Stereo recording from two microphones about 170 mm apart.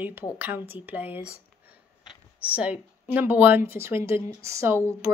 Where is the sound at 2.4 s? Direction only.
10° right (ahead or behind).